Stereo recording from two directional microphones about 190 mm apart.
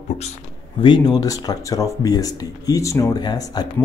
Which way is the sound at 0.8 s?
25° left (ahead or behind).